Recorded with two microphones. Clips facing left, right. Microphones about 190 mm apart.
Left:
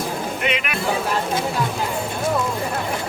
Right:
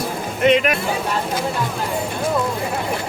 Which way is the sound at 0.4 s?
35° right (ahead or behind).